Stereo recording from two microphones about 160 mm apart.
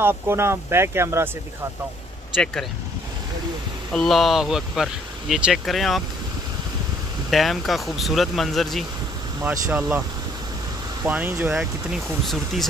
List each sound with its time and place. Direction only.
0.0 s speech: 15° right (ahead or behind)
3.9 s speech: centre (ahead or behind)
7.2 s speech: centre (ahead or behind)
9.4 s speech: 10° right (ahead or behind)
11.1 s speech: 10° right (ahead or behind)